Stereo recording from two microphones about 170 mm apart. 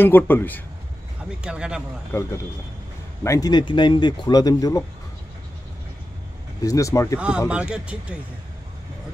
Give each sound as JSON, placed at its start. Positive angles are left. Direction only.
{"t": 0.0, "sound": "a man's voice", "side_deg": 10}
{"t": 1.4, "sound": "speech", "side_deg": -5}
{"t": 2.1, "sound": "a man's voice", "side_deg": 15}
{"t": 6.6, "sound": "speech", "side_deg": 20}
{"t": 7.2, "sound": "speech", "side_deg": -5}